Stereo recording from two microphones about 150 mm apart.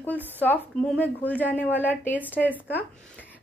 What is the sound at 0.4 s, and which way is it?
A woman's voice, 10° left (ahead or behind).